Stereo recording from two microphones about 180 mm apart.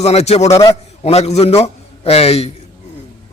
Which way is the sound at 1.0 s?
35° left (ahead or behind).